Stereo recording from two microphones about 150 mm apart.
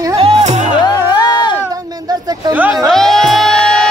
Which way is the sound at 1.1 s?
30° left (ahead or behind).